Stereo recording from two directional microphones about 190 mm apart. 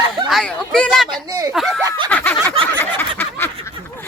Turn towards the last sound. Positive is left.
turn(degrees=10)  # may be behind; listen again after turning